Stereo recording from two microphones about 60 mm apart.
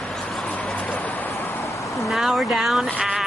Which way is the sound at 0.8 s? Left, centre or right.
Left.